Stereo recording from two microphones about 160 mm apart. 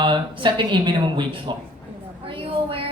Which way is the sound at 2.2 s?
35° right (ahead or behind).